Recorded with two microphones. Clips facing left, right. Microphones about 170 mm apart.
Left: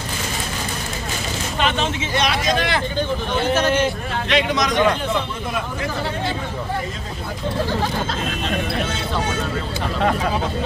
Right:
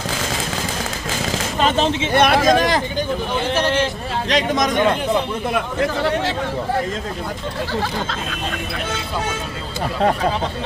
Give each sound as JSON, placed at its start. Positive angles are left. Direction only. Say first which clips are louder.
{"t": 1.6, "sound": "speech", "louder": "right 4 dB", "side_deg": -35}
{"t": 2.1, "sound": "speech", "louder": "right 6 dB", "side_deg": -50}
{"t": 4.3, "sound": "speech", "louder": "right 1 dB", "side_deg": -45}